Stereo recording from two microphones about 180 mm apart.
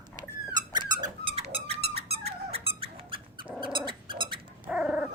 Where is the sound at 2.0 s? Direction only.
60° right (ahead or behind).